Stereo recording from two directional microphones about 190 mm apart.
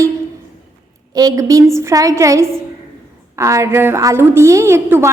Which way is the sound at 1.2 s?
20° right (ahead or behind).